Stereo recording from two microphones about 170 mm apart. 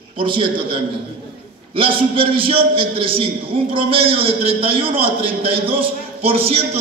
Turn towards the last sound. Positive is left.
turn(degrees=-35)  # may be behind; listen again after turning